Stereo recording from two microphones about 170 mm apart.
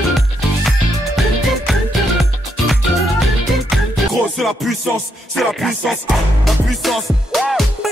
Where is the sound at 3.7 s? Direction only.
Centre (ahead or behind).